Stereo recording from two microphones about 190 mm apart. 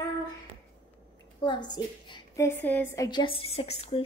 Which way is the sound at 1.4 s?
25° left (ahead or behind).